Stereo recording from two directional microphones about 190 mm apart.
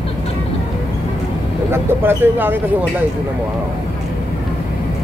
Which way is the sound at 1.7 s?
10° right (ahead or behind).